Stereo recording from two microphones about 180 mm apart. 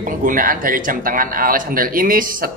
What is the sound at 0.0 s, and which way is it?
A man's voice, 50° right (ahead or behind).